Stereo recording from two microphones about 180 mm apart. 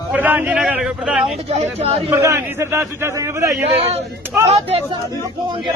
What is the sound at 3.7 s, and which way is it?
Speech, 35° right (ahead or behind).